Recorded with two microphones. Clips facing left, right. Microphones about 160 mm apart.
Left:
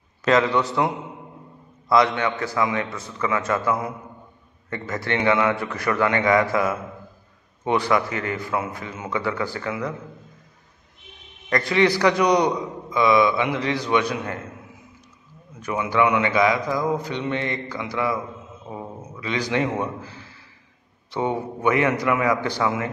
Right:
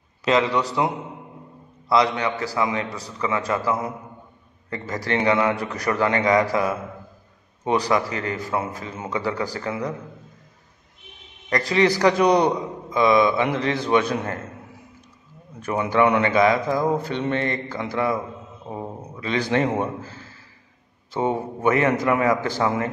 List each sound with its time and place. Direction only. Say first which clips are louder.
0.5 s a man's voice: left 1 dB; centre (ahead or behind)
1.9 s a man's voice: left 1 dB; 30° right (ahead or behind)
4.6 s a man's voice: even; 35° right (ahead or behind)
11.5 s a man's voice: even; 35° right (ahead or behind)
12.2 s a man's voice: right 2 dB; 25° right (ahead or behind)
12.9 s a man's voice: right 1 dB; 45° right (ahead or behind)
15.6 s speech: right 2 dB; 40° right (ahead or behind)
18.7 s a sound: right 2 dB; 35° right (ahead or behind)
19.3 s speech: right 2 dB; 45° right (ahead or behind)
20.0 s a sound: right 1 dB; 45° right (ahead or behind)
21.2 s a man's voice: right 1 dB; 30° right (ahead or behind)